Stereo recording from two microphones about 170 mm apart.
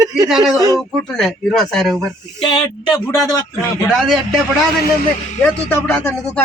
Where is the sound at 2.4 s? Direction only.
30° left (ahead or behind).